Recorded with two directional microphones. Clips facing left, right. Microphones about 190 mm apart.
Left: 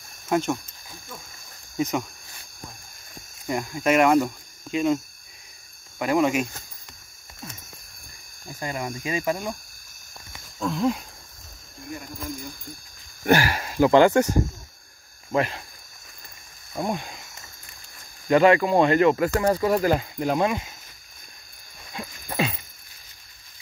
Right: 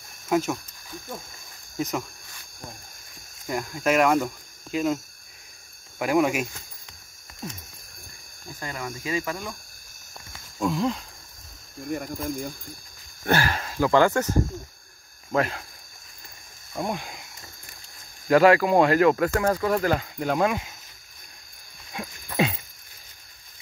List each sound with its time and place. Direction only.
0.3 s speech: centre (ahead or behind)
1.8 s speech: centre (ahead or behind)
3.4 s speech: 5° left (ahead or behind)
5.9 s speech: 10° right (ahead or behind)
8.5 s speech: 20° left (ahead or behind)
10.6 s speech: centre (ahead or behind)
11.9 s speech: 55° right (ahead or behind)
13.2 s speech: 15° left (ahead or behind)
15.3 s speech: centre (ahead or behind)
16.7 s speech: centre (ahead or behind)
18.3 s speech: 5° right (ahead or behind)